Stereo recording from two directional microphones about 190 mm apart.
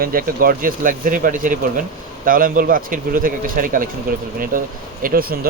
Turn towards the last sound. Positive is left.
turn(degrees=-50)  # may be behind; listen again after turning